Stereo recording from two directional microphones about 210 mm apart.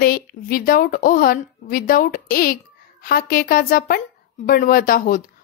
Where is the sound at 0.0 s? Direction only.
45° left (ahead or behind).